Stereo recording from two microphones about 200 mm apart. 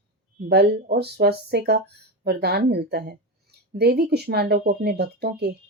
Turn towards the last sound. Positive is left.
turn(degrees=-55)  # may be behind; listen again after turning